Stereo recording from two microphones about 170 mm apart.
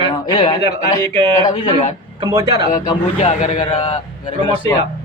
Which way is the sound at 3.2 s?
40° left (ahead or behind).